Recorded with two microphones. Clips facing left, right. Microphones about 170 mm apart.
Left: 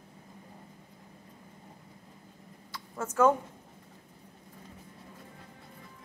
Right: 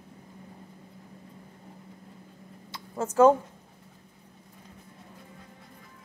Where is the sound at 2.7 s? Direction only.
30° right (ahead or behind).